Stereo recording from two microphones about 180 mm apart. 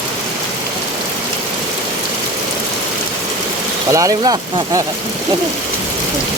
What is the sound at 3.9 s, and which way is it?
Speech, 20° right (ahead or behind).